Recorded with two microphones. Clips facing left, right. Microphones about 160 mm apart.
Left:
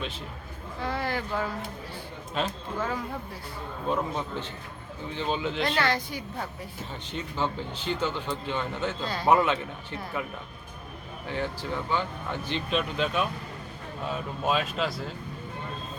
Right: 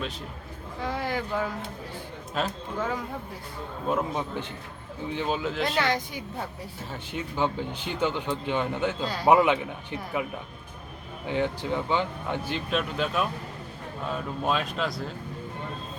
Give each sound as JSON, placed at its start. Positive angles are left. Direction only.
{"t": 0.8, "sound": "speech", "side_deg": -15}
{"t": 2.4, "sound": "speech", "side_deg": 0}
{"t": 3.8, "sound": "speech", "side_deg": -5}
{"t": 5.8, "sound": "a woman's voice", "side_deg": -20}
{"t": 11.3, "sound": "speech", "side_deg": -20}
{"t": 12.5, "sound": "speech", "side_deg": -5}